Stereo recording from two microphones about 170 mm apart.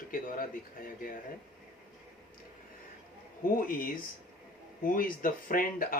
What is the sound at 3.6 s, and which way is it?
Speech, 55° left (ahead or behind).